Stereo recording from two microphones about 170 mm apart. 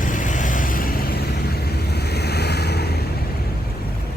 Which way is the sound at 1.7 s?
75° left (ahead or behind).